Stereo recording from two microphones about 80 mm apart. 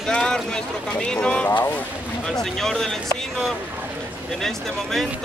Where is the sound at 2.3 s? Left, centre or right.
Centre.